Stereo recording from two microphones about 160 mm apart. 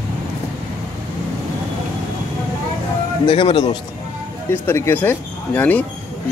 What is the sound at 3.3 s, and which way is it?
Speech, 30° left (ahead or behind).